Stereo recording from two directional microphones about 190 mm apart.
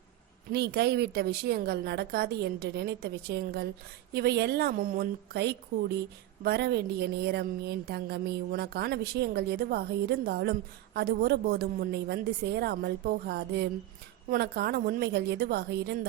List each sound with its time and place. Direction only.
0.5 s a woman's voice: 60° right (ahead or behind)